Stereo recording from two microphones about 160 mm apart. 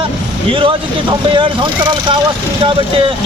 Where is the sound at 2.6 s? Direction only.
35° right (ahead or behind).